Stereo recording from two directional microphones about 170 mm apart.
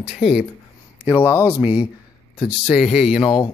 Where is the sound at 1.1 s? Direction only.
15° left (ahead or behind).